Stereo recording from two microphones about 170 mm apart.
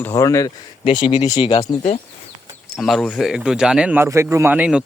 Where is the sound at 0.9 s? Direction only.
30° left (ahead or behind).